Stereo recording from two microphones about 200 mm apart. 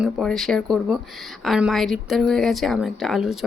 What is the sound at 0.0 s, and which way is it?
Speech, centre (ahead or behind).